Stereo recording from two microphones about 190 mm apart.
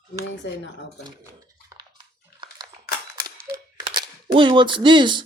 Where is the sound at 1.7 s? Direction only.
20° right (ahead or behind).